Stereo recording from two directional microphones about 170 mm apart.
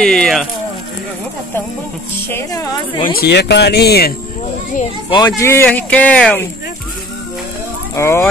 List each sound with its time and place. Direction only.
0.0 s speech: 5° left (ahead or behind)
2.2 s speech: 15° left (ahead or behind)
3.0 s speech: 60° left (ahead or behind)
5.1 s speech: 20° left (ahead or behind)
7.9 s speech: 15° left (ahead or behind)